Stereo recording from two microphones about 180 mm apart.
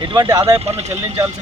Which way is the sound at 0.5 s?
35° right (ahead or behind).